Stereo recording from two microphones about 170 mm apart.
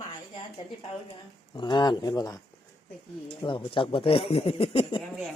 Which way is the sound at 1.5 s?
25° left (ahead or behind).